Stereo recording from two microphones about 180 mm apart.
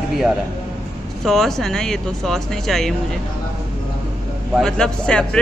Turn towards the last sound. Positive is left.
turn(degrees=5)  # may be behind; listen again after turning